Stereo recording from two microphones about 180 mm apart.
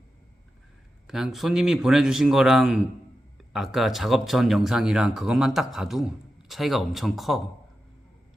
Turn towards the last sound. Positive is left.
turn(degrees=0)  # may be behind; listen again after turning